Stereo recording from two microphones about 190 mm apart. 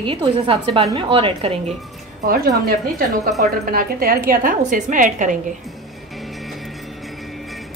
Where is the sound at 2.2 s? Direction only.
50° right (ahead or behind).